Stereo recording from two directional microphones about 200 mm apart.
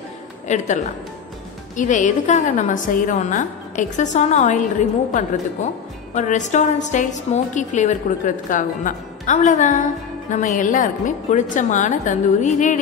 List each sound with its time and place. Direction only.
0.5 s a woman's voice: 35° left (ahead or behind)